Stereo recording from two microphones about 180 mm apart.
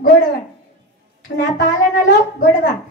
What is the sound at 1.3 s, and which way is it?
Speech, 60° left (ahead or behind).